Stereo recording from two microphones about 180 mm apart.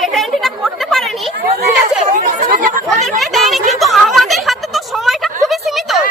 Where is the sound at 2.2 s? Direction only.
50° right (ahead or behind).